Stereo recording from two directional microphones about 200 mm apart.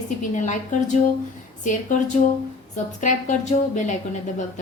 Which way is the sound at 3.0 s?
35° left (ahead or behind).